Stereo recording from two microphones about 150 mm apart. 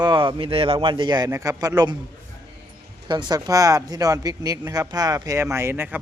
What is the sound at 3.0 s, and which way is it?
Speech, 30° right (ahead or behind).